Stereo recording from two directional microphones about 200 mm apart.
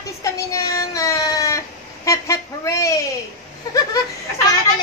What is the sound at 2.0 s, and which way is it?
Speech, 15° left (ahead or behind).